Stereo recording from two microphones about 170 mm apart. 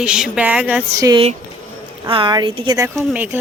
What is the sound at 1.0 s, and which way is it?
Speech, 20° right (ahead or behind).